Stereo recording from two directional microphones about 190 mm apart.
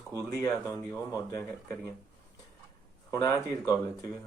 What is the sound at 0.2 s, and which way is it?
Speech, 15° left (ahead or behind).